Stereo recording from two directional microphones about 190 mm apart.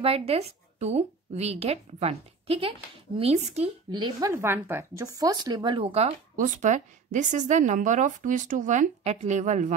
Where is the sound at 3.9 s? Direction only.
15° right (ahead or behind).